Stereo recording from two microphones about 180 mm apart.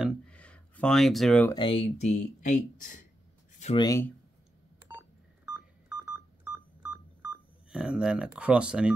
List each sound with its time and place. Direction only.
0.3 s a sound: 5° left (ahead or behind)
1.5 s speech: 30° left (ahead or behind)
3.7 s speech: 20° left (ahead or behind)
4.8 s telephone dialing: 10° right (ahead or behind)